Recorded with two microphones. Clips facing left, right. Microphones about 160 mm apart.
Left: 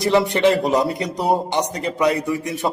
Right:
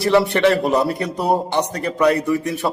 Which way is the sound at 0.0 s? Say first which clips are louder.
Right 1 dB; 15° left (ahead or behind).